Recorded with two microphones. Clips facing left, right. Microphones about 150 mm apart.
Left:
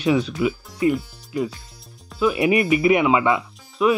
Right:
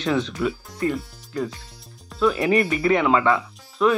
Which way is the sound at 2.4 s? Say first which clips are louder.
Left 2 dB; 15° left (ahead or behind).